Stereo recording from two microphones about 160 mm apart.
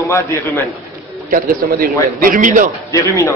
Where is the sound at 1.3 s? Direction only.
65° right (ahead or behind).